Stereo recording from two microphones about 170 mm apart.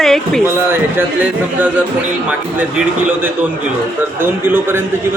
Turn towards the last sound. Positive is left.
turn(degrees=-10)  # may be behind; listen again after turning